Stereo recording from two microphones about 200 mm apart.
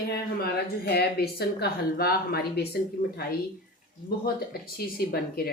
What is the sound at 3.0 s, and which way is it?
Speech, 40° left (ahead or behind).